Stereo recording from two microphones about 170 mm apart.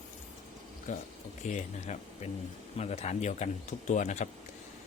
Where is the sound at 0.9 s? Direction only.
45° left (ahead or behind).